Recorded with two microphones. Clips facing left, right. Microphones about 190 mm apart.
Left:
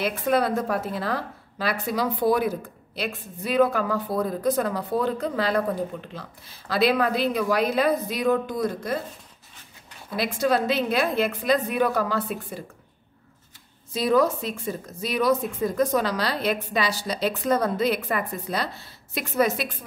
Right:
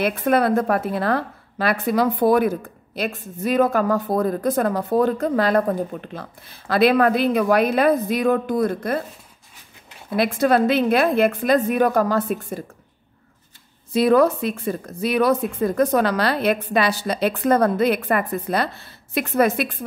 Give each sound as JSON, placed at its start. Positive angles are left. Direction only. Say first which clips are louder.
{"t": 0.0, "sound": "a woman's voice", "louder": "right 4 dB", "side_deg": -55}
{"t": 10.1, "sound": "a woman's voice", "louder": "right 5 dB", "side_deg": -55}
{"t": 13.9, "sound": "a woman's voice", "louder": "right 5 dB", "side_deg": -60}